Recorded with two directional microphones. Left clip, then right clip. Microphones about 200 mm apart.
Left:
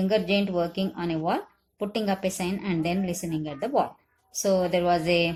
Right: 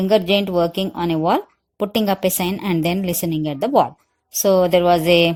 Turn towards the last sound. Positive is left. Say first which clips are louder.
# right 9 dB
turn(degrees=-50)  # may be behind; listen again after turning